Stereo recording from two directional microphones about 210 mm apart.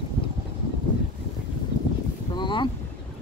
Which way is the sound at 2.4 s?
20° left (ahead or behind).